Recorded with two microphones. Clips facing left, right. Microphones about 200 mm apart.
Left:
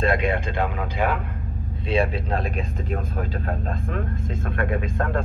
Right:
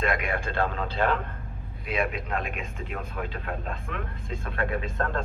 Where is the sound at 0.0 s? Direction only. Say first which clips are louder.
Left 6 dB; 30° left (ahead or behind); by 1.2 s 10° left (ahead or behind).